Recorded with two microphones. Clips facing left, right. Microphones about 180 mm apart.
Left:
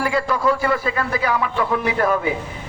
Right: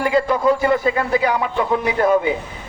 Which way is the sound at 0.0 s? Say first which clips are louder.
Right 3 dB; 20° right (ahead or behind).